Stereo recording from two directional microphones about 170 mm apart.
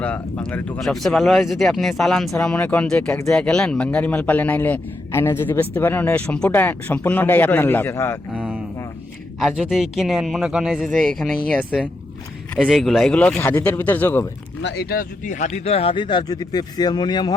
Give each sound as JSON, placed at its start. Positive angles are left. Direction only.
{"t": 0.0, "sound": "a man's voice", "side_deg": 5}
{"t": 8.3, "sound": "a sound", "side_deg": -10}
{"t": 9.4, "sound": "a man's voice", "side_deg": -5}
{"t": 14.6, "sound": "speech", "side_deg": 80}